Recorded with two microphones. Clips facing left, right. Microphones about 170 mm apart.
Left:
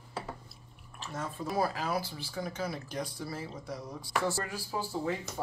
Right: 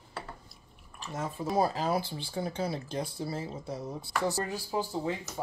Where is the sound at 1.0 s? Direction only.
20° right (ahead or behind).